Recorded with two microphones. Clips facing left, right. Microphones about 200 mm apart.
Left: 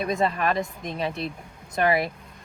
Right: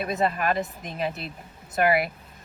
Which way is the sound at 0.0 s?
5° right (ahead or behind).